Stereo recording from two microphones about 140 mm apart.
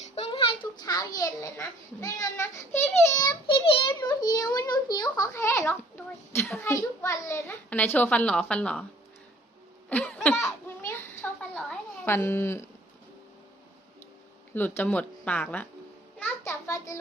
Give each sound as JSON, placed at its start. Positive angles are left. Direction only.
{"t": 0.2, "sound": "a sound", "side_deg": 40}
{"t": 6.7, "sound": "a child's voice", "side_deg": 25}
{"t": 9.9, "sound": "laughter", "side_deg": 10}
{"t": 10.4, "sound": "children playing", "side_deg": 15}
{"t": 12.0, "sound": "a child's voice", "side_deg": 15}
{"t": 14.5, "sound": "a child's voice", "side_deg": 15}
{"t": 16.1, "sound": "a sound", "side_deg": 15}